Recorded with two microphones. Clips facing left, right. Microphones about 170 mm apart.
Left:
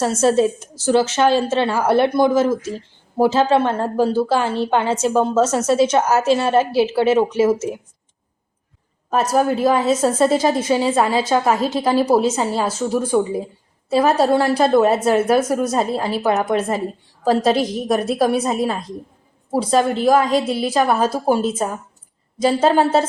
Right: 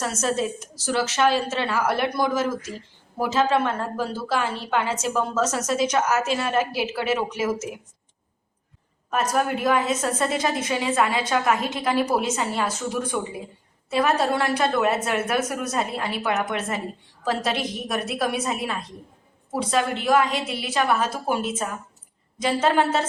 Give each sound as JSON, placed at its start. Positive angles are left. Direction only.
{"t": 0.0, "sound": "a woman's voice", "side_deg": 30}
{"t": 9.3, "sound": "a woman's voice", "side_deg": 30}